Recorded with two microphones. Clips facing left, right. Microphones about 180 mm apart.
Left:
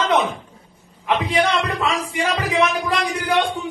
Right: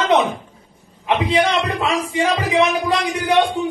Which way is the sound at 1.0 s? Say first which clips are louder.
Right 2 dB; 20° right (ahead or behind).